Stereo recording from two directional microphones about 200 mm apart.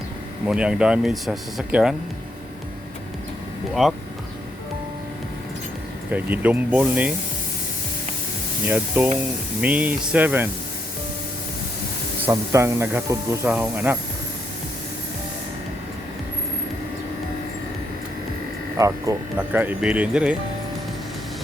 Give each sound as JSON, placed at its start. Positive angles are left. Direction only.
{"t": 0.4, "sound": "speech", "side_deg": -5}
{"t": 3.8, "sound": "speech", "side_deg": 0}
{"t": 6.1, "sound": "a man's voice", "side_deg": -10}
{"t": 8.6, "sound": "a man's voice", "side_deg": -5}
{"t": 12.2, "sound": "a man's voice", "side_deg": -15}
{"t": 18.8, "sound": "a man's voice", "side_deg": -15}